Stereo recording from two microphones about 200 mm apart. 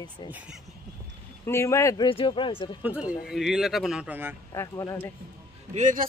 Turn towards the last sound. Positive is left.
turn(degrees=-40)  # may be behind; listen again after turning